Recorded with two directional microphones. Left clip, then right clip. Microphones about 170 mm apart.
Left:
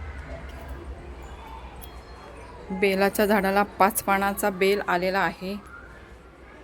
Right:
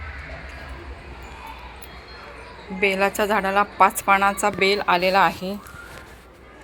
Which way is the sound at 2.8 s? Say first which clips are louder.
Right 2 dB; 35° left (ahead or behind).